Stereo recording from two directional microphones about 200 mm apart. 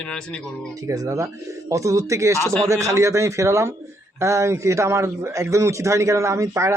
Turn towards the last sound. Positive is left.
turn(degrees=-15)  # may be behind; listen again after turning